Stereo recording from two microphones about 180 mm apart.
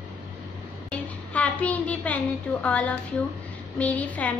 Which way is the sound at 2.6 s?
10° left (ahead or behind).